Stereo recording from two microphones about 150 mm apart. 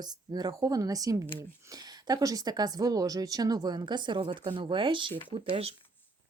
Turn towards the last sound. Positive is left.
turn(degrees=-40)  # may be behind; listen again after turning